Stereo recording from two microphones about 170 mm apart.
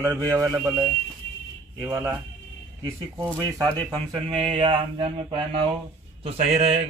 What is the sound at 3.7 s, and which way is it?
A man's voice, 30° right (ahead or behind).